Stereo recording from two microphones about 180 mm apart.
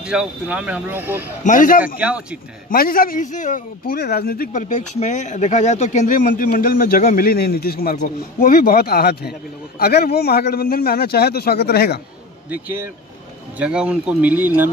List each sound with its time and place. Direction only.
0.0 s speech: 5° right (ahead or behind)
1.4 s a man's voice: 45° left (ahead or behind)
2.0 s speech: 5° right (ahead or behind)
2.7 s a man's voice: 55° left (ahead or behind)
12.4 s speech: 10° right (ahead or behind)